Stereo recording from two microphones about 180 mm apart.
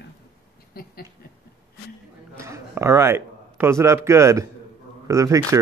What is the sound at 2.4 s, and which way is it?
A man's voice, 15° right (ahead or behind).